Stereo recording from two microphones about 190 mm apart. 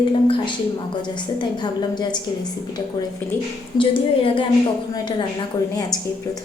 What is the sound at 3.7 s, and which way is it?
Speech, 25° left (ahead or behind).